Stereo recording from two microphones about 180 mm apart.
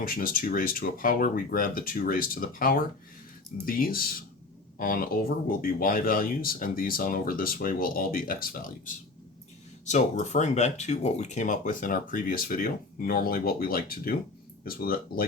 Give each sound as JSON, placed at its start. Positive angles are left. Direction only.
{"t": 0.0, "sound": "speech", "side_deg": 50}
{"t": 9.8, "sound": "speech", "side_deg": 40}